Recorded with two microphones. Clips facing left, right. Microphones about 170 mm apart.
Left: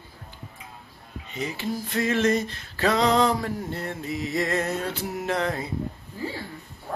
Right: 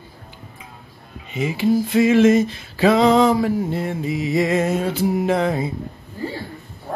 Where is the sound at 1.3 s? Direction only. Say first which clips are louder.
Right 11 dB; 10° right (ahead or behind).